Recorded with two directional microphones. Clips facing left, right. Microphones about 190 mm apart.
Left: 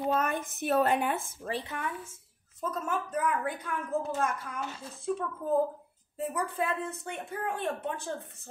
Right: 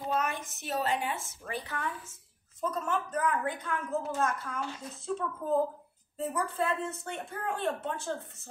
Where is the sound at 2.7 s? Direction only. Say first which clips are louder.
Right 1 dB; 5° left (ahead or behind).